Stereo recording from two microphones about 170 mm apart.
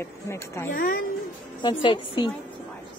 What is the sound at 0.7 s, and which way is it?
Speech, 55° left (ahead or behind).